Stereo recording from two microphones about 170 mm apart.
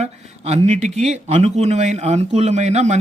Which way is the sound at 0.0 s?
40° right (ahead or behind).